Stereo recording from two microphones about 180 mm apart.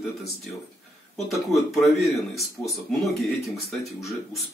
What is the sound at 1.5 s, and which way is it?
Speech, centre (ahead or behind).